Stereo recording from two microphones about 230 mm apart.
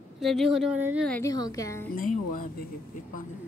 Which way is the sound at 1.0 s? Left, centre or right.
Centre.